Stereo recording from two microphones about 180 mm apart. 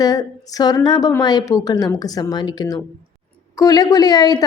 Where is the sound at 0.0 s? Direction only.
20° left (ahead or behind).